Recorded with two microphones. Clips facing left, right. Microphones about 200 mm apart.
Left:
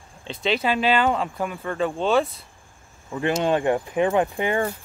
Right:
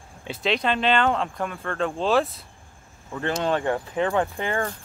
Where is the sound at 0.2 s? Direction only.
5° right (ahead or behind).